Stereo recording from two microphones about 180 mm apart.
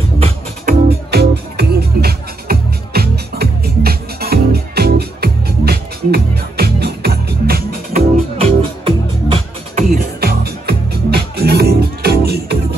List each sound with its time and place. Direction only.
0.7 s music: 65° right (ahead or behind)
8.4 s music: 30° right (ahead or behind)
10.2 s music: 60° right (ahead or behind)